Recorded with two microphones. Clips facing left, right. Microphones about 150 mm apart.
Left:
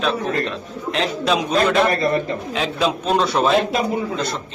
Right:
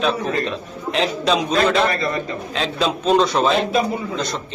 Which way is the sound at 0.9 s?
Centre (ahead or behind).